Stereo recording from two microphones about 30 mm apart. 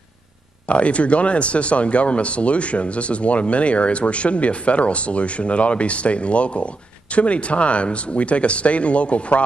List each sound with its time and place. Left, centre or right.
0.7 s speech: left